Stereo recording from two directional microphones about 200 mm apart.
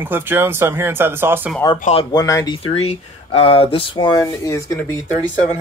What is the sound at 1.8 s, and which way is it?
Speech, 30° left (ahead or behind).